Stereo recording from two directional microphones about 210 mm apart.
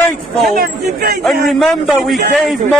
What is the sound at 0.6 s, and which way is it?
Speech, 50° right (ahead or behind).